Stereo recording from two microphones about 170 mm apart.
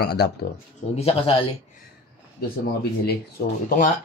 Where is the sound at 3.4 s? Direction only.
65° left (ahead or behind).